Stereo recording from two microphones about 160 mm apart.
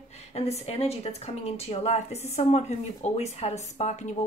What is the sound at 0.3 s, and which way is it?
A woman's voice, 40° left (ahead or behind).